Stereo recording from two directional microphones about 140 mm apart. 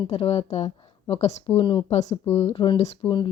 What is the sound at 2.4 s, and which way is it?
Speech, 50° left (ahead or behind).